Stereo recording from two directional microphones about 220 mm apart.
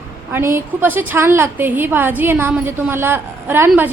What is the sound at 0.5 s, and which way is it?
A woman's voice, 10° right (ahead or behind).